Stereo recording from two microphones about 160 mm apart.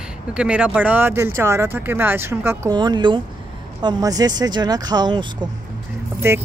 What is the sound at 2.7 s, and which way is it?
Speech, 25° right (ahead or behind).